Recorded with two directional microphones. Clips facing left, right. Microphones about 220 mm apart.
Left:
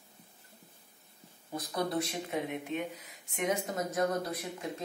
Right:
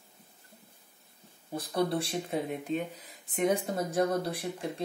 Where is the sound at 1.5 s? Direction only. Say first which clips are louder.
Right 3 dB; 30° right (ahead or behind).